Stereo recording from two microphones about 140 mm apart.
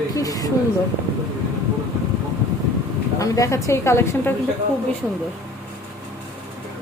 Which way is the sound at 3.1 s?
25° left (ahead or behind).